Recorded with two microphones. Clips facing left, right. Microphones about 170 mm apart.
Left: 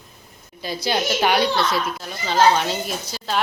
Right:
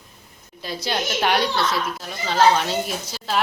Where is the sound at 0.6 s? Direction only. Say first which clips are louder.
Left 3 dB; centre (ahead or behind).